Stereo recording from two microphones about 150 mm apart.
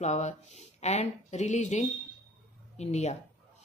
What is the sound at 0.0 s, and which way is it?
Speech, 50° left (ahead or behind).